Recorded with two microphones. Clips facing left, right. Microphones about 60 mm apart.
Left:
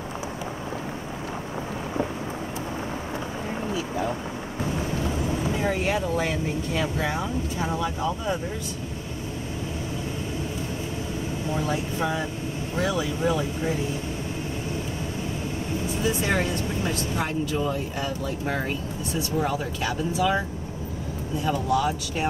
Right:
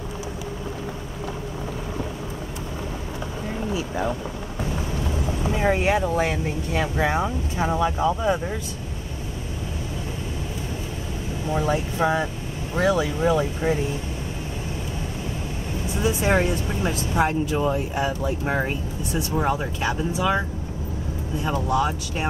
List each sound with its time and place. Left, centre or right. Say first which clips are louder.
5.6 s speech: right 7 dB; right
11.5 s speech: right 5 dB; right
16.0 s speech: right 5 dB; right
21.5 s speech: right 1 dB; right